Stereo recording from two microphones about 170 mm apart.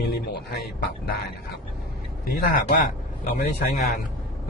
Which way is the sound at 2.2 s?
60° left (ahead or behind).